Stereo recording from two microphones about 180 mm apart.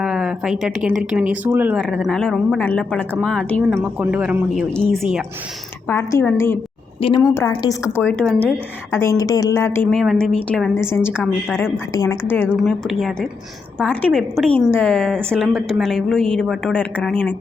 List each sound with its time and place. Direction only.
0.0 s a woman's voice: 5° right (ahead or behind)
1.8 s a woman's voice: centre (ahead or behind)
3.8 s a woman's voice: 10° right (ahead or behind)
5.9 s a woman's voice: 15° left (ahead or behind)
8.0 s a woman's voice: 5° left (ahead or behind)
12.5 s a woman's voice: centre (ahead or behind)